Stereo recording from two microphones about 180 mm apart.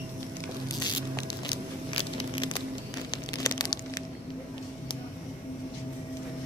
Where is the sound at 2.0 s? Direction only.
30° left (ahead or behind).